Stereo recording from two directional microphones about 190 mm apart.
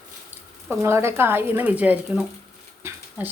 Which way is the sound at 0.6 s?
15° right (ahead or behind).